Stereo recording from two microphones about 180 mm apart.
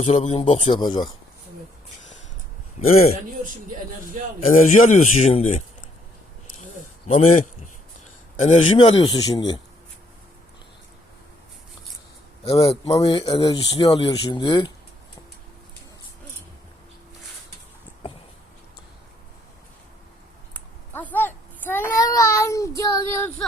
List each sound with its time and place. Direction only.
0.0 s a man's voice: 35° left (ahead or behind)
2.8 s a man's voice: 40° left (ahead or behind)
4.5 s a man's voice: 50° left (ahead or behind)
7.2 s a man's voice: 45° left (ahead or behind)
8.4 s speech: 35° left (ahead or behind)
12.5 s a man's voice: 30° left (ahead or behind)
20.5 s a sound: 10° left (ahead or behind)